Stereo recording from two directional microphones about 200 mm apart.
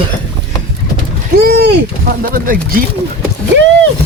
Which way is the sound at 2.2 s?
45° right (ahead or behind).